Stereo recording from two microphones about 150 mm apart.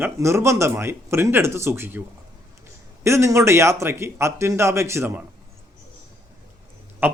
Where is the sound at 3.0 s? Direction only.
20° right (ahead or behind).